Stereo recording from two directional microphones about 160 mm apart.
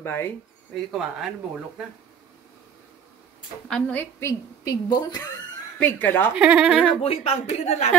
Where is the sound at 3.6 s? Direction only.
10° left (ahead or behind); by 5.3 s 25° left (ahead or behind).